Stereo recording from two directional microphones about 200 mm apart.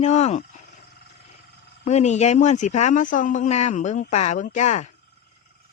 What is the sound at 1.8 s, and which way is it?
Speech, 35° left (ahead or behind).